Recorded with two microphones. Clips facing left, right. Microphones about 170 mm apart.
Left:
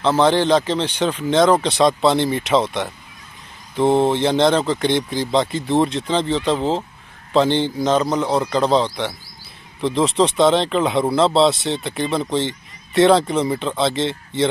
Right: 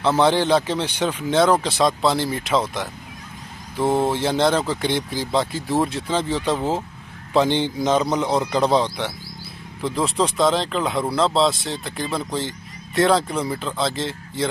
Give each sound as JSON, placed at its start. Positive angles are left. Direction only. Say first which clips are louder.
{"t": 0.2, "sound": "speech", "louder": "left 2 dB", "side_deg": -10}
{"t": 3.7, "sound": "mantra", "louder": "left 4 dB", "side_deg": 25}
{"t": 4.1, "sound": "speech", "louder": "left 3 dB", "side_deg": -5}
{"t": 9.8, "sound": "speech", "louder": "left 4 dB", "side_deg": 0}